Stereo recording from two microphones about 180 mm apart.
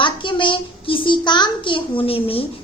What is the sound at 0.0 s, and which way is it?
A child's voice, 25° left (ahead or behind).